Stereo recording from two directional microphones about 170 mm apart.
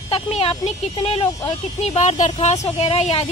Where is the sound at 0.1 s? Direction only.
35° left (ahead or behind).